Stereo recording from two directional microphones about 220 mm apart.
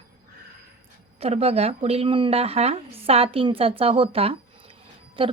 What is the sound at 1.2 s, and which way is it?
A woman's voice, 30° right (ahead or behind).